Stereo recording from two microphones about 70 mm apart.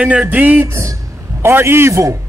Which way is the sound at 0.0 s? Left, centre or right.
Centre.